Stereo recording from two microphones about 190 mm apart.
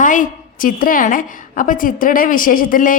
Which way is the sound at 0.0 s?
45° left (ahead or behind).